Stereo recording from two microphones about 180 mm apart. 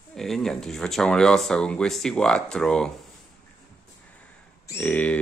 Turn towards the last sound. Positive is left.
turn(degrees=5)  # may be behind; listen again after turning